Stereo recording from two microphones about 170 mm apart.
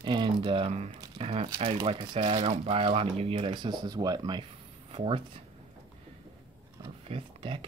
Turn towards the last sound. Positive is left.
turn(degrees=-30)  # may be behind; listen again after turning